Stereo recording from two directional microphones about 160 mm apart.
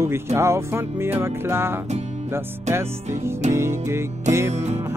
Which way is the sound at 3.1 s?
15° right (ahead or behind).